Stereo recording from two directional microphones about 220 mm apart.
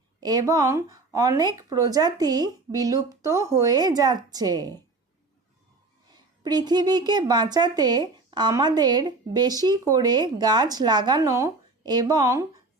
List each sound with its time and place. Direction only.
0.2 s speech: 20° right (ahead or behind)
6.4 s speech: 20° right (ahead or behind)